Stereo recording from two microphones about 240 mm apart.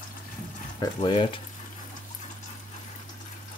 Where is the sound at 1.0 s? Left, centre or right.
Left.